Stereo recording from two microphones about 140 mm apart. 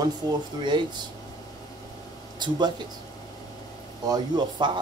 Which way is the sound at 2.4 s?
30° right (ahead or behind).